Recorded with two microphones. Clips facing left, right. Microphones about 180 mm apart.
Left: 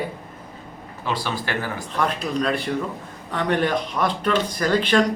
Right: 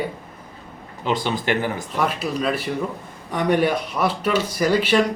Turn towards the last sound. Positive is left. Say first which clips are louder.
# right 1 dB
turn(degrees=-5)  # may be behind; listen again after turning